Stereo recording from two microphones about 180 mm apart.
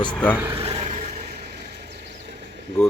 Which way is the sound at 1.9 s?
70° right (ahead or behind).